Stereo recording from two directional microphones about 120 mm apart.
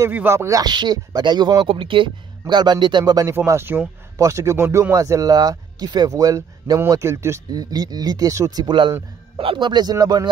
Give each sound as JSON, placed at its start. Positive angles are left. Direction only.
{"t": 0.1, "sound": "speech", "side_deg": -20}